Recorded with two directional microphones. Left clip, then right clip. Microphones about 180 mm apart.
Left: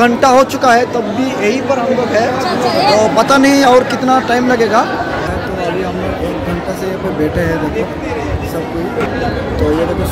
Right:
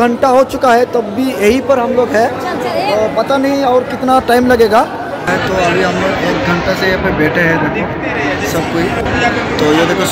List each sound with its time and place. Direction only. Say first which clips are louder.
0.0 s speech: left 1 dB; 15° right (ahead or behind)
1.4 s speech: right 4 dB; 45° right (ahead or behind)
2.8 s speech: left 3 dB; 5° right (ahead or behind)
4.1 s speech: right 4 dB; 25° right (ahead or behind)